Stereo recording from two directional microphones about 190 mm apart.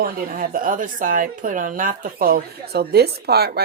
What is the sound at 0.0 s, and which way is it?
Speech, 50° right (ahead or behind).